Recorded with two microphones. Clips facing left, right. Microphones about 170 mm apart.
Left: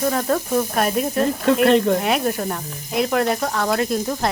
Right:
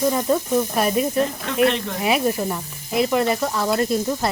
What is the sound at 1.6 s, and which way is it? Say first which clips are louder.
Speech: left 3 dB; 45° left (ahead or behind).